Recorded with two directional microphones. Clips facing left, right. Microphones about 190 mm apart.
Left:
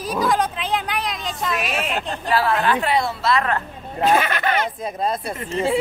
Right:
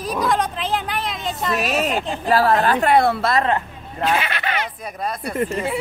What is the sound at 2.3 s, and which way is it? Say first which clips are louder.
A woman's voice: right 3 dB; 40° right (ahead or behind).